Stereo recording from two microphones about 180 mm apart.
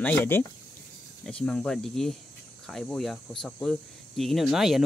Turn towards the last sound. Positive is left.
turn(degrees=0)  # may be behind; listen again after turning